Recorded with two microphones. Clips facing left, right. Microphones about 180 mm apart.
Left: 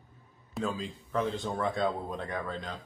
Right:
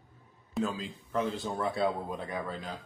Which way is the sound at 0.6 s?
Centre (ahead or behind).